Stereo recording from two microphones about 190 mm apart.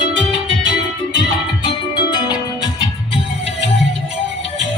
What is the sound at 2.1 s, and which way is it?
Music, 20° left (ahead or behind).